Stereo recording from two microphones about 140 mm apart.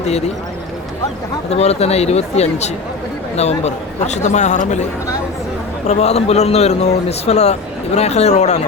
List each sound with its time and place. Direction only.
1.5 s speech: 50° left (ahead or behind)